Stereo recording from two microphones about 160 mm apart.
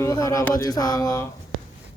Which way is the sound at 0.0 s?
20° left (ahead or behind).